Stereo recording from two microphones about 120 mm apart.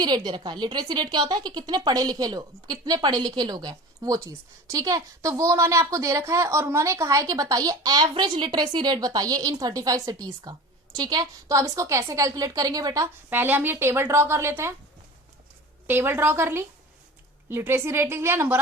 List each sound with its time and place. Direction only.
0.0 s speech: 35° right (ahead or behind)
13.3 s a woman's voice: 15° right (ahead or behind)
15.9 s a woman's voice: 20° right (ahead or behind)